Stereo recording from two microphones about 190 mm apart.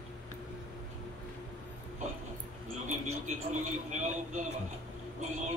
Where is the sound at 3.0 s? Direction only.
40° right (ahead or behind).